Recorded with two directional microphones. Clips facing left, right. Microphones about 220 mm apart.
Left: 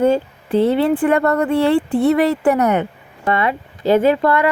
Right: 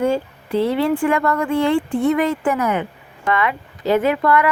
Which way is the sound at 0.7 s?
35° left (ahead or behind).